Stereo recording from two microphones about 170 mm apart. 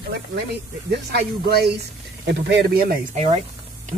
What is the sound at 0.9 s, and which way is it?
Speech, 70° right (ahead or behind).